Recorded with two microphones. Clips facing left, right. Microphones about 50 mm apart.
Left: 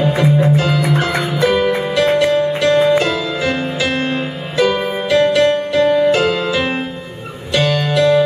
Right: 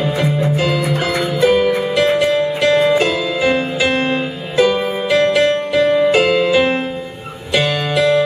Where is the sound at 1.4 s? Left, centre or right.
Centre.